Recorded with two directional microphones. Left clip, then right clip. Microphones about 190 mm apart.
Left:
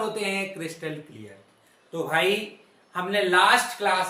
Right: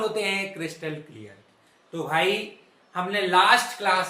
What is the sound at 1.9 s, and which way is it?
Speech, centre (ahead or behind).